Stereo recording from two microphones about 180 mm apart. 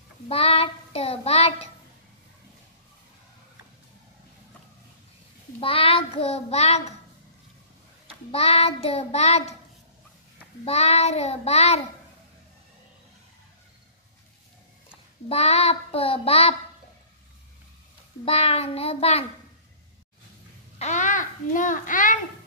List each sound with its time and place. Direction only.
0.3 s child singing: 30° left (ahead or behind)
5.6 s a child's voice: 30° left (ahead or behind)
8.3 s child singing: 35° left (ahead or behind)
10.6 s child singing: 35° left (ahead or behind)
15.2 s child singing: 35° left (ahead or behind)
18.2 s child singing: 35° left (ahead or behind)
20.8 s a child's voice: 45° left (ahead or behind)